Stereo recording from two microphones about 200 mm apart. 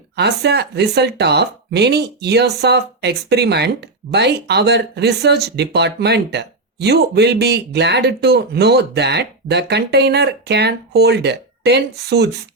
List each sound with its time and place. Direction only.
0.2 s speech: 55° right (ahead or behind)